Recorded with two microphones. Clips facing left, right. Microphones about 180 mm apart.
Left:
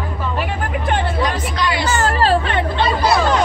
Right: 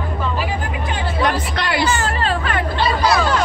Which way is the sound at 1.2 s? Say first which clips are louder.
Even; 60° right (ahead or behind).